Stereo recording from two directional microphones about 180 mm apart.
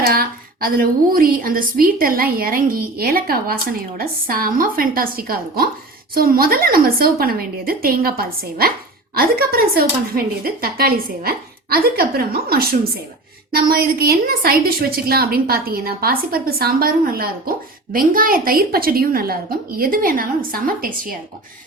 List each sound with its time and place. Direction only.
0.0 s a woman's voice: 55° right (ahead or behind)